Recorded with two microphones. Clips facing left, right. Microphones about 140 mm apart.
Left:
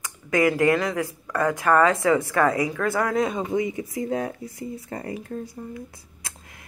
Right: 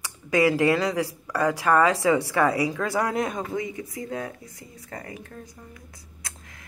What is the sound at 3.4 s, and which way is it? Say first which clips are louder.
Speech: left 5 dB; 20° left (ahead or behind).